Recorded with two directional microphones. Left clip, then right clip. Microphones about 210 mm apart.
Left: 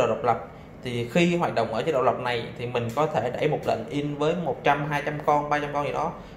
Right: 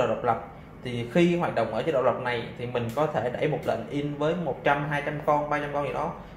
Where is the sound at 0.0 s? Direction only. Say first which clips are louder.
Left 2 dB; 15° left (ahead or behind).